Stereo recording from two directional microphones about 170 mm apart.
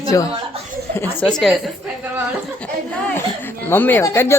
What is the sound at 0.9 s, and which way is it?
Speech, 10° left (ahead or behind).